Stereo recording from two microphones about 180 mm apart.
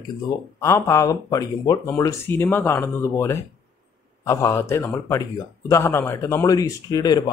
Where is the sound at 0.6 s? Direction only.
15° left (ahead or behind).